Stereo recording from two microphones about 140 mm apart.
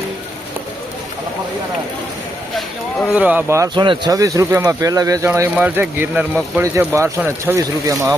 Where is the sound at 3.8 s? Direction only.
30° right (ahead or behind).